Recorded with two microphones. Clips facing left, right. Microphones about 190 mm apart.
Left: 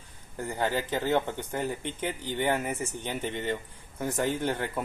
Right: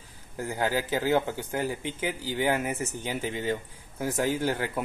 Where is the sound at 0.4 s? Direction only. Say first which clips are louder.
Right 1 dB; 10° right (ahead or behind).